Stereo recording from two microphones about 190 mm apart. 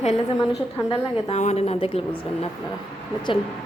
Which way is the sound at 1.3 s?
35° left (ahead or behind).